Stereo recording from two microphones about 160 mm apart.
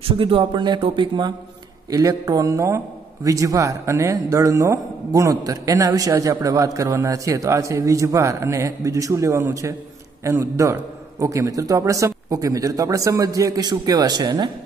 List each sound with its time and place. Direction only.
0.0 s speech: 35° right (ahead or behind)